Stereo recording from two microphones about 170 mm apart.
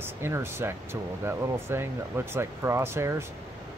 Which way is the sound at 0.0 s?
15° right (ahead or behind).